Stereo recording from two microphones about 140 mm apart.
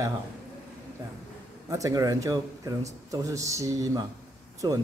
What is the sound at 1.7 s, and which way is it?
A man's voice, 25° right (ahead or behind).